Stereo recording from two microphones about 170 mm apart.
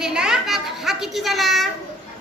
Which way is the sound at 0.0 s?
5° right (ahead or behind).